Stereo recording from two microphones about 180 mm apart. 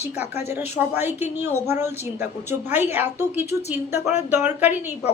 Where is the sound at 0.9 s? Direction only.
10° right (ahead or behind).